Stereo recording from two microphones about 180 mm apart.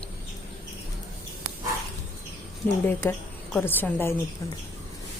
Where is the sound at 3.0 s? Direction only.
10° left (ahead or behind).